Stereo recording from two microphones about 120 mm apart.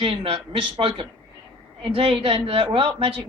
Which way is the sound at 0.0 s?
50° right (ahead or behind).